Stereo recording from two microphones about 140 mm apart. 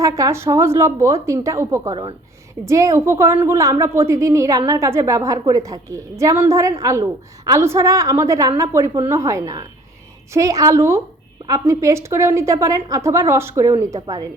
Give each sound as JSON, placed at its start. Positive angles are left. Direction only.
{"t": 0.0, "sound": "a woman's voice", "side_deg": -20}